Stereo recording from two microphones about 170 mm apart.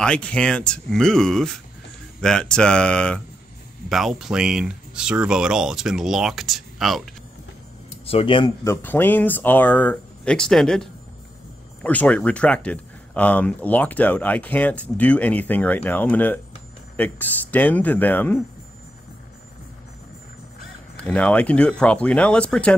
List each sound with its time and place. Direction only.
0.0 s speech: 5° left (ahead or behind)
7.9 s speech: 35° left (ahead or behind)
8.6 s speech: 10° left (ahead or behind)
20.9 s speech: 5° left (ahead or behind)